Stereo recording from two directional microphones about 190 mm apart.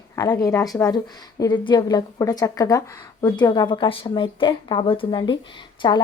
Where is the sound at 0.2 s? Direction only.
20° left (ahead or behind).